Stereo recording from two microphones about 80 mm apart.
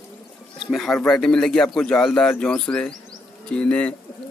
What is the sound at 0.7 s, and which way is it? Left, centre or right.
Speech, centre.